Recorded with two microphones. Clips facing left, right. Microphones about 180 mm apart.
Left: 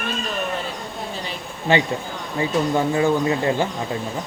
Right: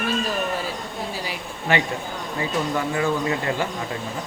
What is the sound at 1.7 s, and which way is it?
Speech, 25° left (ahead or behind).